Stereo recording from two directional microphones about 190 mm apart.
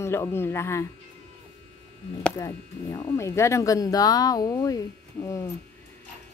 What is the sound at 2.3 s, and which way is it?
A woman's voice, 20° left (ahead or behind).